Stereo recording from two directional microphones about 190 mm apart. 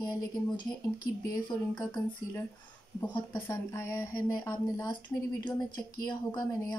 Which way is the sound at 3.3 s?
10° left (ahead or behind).